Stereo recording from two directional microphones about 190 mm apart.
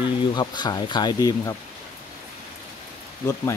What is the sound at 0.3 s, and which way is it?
Speech, 20° left (ahead or behind).